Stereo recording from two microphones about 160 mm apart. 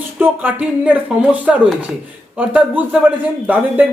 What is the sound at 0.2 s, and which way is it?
Speech, 10° right (ahead or behind).